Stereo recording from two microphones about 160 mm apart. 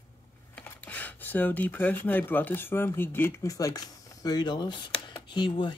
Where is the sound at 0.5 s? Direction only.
10° left (ahead or behind).